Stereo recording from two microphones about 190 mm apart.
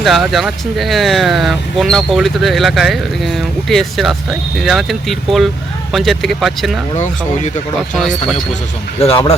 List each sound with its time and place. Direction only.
0.0 s speech: centre (ahead or behind)
6.9 s speech: 40° left (ahead or behind)
7.9 s speech: centre (ahead or behind)
9.0 s speech: 30° left (ahead or behind)